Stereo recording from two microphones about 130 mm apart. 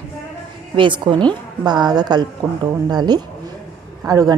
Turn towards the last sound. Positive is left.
turn(degrees=-25)  # may be behind; listen again after turning